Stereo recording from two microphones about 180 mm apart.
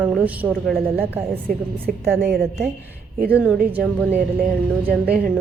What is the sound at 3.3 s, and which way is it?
A woman's voice, 5° right (ahead or behind).